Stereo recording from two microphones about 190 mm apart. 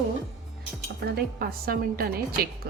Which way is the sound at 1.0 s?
55° right (ahead or behind).